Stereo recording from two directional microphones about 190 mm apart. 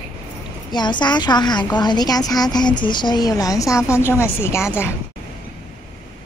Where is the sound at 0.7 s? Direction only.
25° left (ahead or behind).